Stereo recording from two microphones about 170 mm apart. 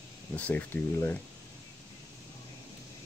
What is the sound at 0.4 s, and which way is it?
Speech, 10° left (ahead or behind).